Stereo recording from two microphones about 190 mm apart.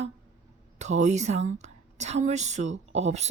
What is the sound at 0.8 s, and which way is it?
A woman's voice, 40° right (ahead or behind).